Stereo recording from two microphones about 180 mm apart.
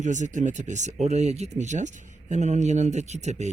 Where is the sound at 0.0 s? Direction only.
45° right (ahead or behind).